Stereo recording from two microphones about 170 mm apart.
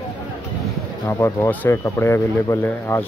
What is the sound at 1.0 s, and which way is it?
Speech, 15° left (ahead or behind).